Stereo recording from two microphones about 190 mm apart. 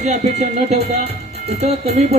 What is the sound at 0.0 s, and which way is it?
Speech, 35° right (ahead or behind).